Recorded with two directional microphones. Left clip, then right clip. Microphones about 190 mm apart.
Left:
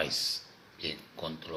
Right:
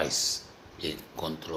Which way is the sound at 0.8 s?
15° right (ahead or behind).